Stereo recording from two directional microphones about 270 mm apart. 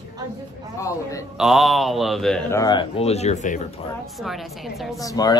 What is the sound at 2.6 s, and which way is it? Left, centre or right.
Speech, centre.